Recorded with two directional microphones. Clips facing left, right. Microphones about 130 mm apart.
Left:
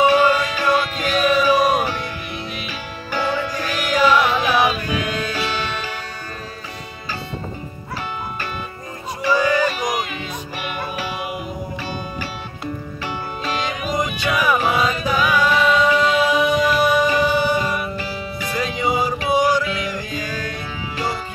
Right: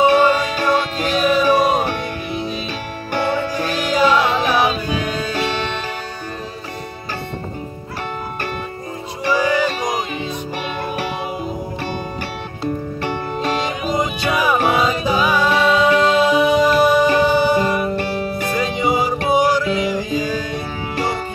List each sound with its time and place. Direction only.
0.1 s music: 35° right (ahead or behind)
3.1 s music: 55° right (ahead or behind)
3.7 s music: 30° right (ahead or behind)
9.5 s music: 30° right (ahead or behind)
13.0 s music: 50° right (ahead or behind)
13.7 s music: 30° right (ahead or behind)
17.9 s music: 55° right (ahead or behind)
18.6 s music: 20° right (ahead or behind)
19.3 s music: 30° right (ahead or behind)
20.9 s music: 45° right (ahead or behind)